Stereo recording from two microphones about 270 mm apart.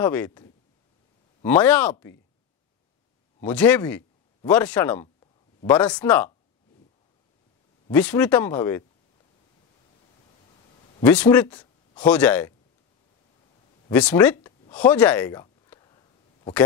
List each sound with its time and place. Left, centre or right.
0.0 s speech: centre
3.4 s speech: centre
4.9 s a sound: centre
5.7 s speech: centre
7.9 s speech: centre
11.0 s speech: centre
13.9 s speech: centre
15.7 s a sound: centre